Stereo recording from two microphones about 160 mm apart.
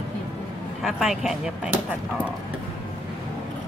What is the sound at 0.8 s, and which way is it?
Speech, centre (ahead or behind).